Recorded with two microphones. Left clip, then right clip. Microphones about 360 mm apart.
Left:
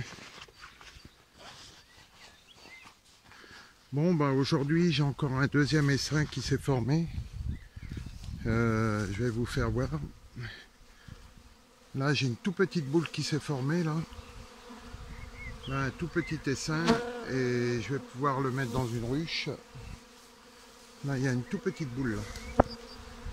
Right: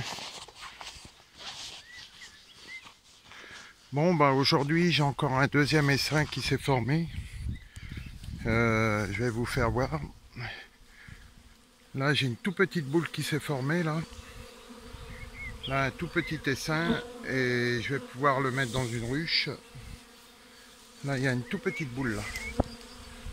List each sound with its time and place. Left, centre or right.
1.5 s a sound: centre
3.3 s speech: centre
8.5 s speech: centre
12.0 s speech: centre
15.6 s speech: centre
21.1 s speech: centre
22.6 s bee: left